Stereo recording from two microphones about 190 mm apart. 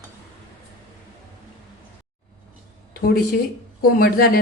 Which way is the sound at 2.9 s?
50° left (ahead or behind).